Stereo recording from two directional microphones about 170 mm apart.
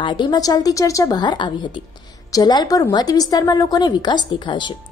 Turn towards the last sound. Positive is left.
turn(degrees=25)  # may be behind; listen again after turning